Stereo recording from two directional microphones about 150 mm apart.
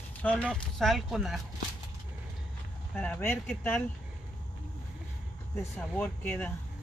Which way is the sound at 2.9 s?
10° left (ahead or behind).